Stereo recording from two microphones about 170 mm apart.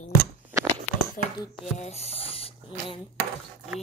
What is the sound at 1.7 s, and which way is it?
Speech, 40° left (ahead or behind).